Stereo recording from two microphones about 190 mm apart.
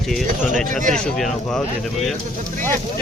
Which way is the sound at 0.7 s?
40° right (ahead or behind).